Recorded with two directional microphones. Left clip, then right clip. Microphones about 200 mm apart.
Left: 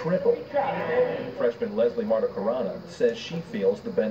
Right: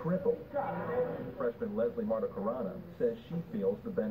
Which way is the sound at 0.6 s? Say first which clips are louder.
Left 10 dB; 15° left (ahead or behind).